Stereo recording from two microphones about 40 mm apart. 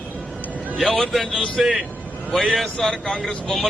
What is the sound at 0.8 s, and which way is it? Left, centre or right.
A man's voice, centre.